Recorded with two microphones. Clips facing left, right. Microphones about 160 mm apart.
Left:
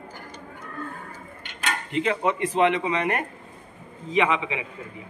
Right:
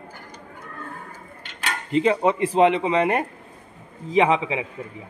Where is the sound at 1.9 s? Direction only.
35° right (ahead or behind).